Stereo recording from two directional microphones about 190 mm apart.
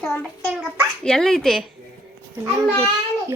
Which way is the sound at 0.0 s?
5° left (ahead or behind).